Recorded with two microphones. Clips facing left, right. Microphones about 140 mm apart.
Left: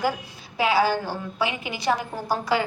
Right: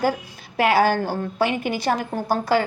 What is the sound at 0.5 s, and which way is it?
A woman's voice, 60° right (ahead or behind).